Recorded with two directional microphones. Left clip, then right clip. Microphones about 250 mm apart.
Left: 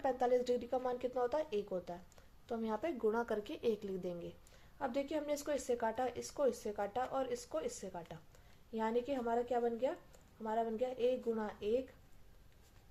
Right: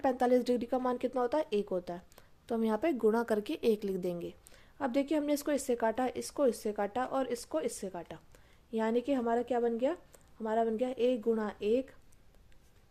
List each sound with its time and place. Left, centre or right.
0.0 s speech: right